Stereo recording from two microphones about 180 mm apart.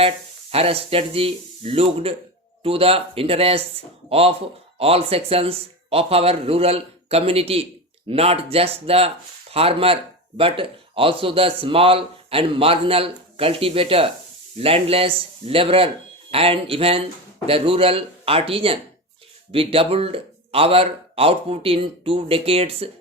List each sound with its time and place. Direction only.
0.5 s speech: 35° right (ahead or behind)